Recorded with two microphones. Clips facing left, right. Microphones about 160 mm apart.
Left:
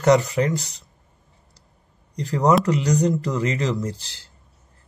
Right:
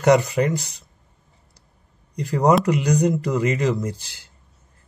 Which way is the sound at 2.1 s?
10° right (ahead or behind).